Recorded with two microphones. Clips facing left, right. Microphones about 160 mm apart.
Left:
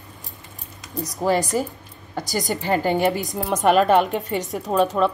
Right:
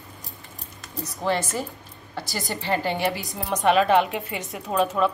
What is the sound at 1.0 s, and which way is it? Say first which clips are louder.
A woman's voice: left 5 dB; 40° left (ahead or behind).